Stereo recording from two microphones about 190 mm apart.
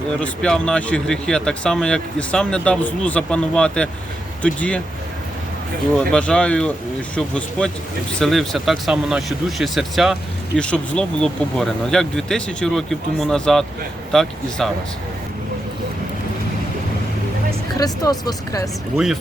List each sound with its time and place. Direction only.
0.2 s speech: 5° left (ahead or behind)
6.0 s speech: 5° left (ahead or behind)
17.7 s speech: 20° left (ahead or behind)